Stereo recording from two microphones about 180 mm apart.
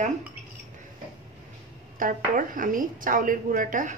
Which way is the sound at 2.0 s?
50° right (ahead or behind).